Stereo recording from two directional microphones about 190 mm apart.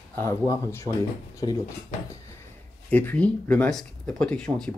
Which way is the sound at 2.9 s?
10° left (ahead or behind).